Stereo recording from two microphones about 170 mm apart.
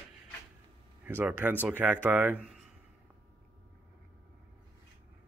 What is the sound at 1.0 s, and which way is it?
A man's voice, 15° right (ahead or behind).